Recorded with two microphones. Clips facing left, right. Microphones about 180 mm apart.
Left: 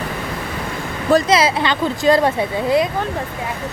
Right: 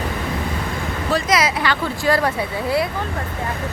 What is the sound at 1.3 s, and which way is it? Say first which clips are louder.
Speech: left 3 dB; 30° left (ahead or behind).